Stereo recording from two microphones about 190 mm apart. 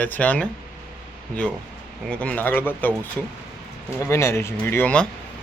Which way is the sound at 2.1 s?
5° left (ahead or behind).